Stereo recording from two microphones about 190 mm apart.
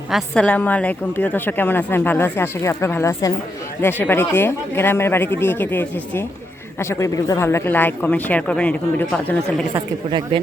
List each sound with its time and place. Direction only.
0.1 s a woman's voice: 5° left (ahead or behind)
9.7 s a woman's voice: 25° right (ahead or behind)